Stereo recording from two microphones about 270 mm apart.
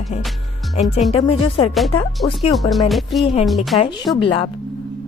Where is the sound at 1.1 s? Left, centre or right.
Left.